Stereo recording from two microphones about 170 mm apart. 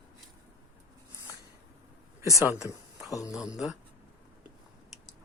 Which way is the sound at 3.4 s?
5° right (ahead or behind).